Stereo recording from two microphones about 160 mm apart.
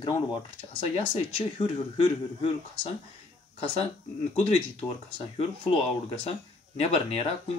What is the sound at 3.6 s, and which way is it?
Speech, 35° left (ahead or behind).